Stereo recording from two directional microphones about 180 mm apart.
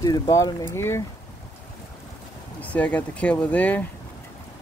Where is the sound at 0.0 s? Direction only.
20° left (ahead or behind).